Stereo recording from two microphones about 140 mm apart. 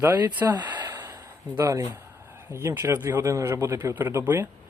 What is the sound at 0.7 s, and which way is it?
Gasp, 30° right (ahead or behind).